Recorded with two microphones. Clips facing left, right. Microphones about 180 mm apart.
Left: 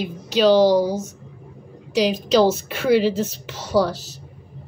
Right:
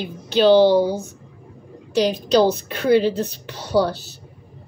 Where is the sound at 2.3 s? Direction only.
5° left (ahead or behind).